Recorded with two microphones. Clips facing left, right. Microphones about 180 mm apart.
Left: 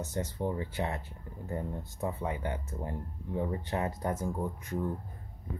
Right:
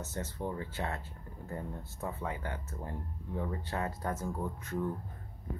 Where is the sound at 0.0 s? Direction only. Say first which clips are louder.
Left 4 dB; 15° left (ahead or behind).